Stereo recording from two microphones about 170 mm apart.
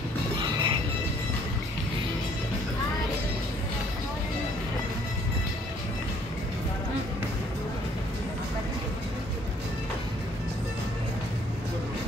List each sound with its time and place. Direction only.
0.4 s music: 25° right (ahead or behind)